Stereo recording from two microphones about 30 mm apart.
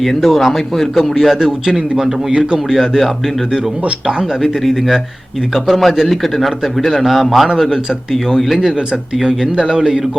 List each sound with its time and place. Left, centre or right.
0.0 s speech: centre
1.4 s a man's voice: centre
4.0 s speech: right
4.6 s speech: centre
6.9 s speech: centre